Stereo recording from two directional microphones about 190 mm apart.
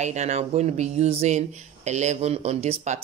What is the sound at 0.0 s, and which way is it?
A woman's voice, 35° right (ahead or behind).